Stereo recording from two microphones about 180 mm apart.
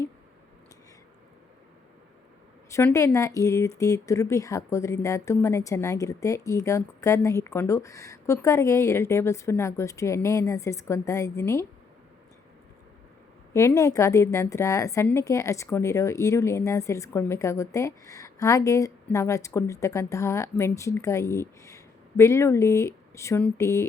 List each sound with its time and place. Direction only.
2.7 s speech: 15° left (ahead or behind)
13.5 s speech: 15° left (ahead or behind)